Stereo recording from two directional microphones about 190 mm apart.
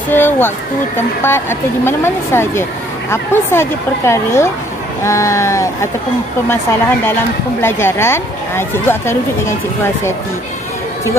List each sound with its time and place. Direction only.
0.1 s speech: 10° left (ahead or behind)
7.6 s speech: 15° left (ahead or behind)